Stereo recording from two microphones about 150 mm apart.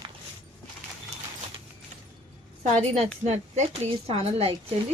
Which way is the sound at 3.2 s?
50° right (ahead or behind).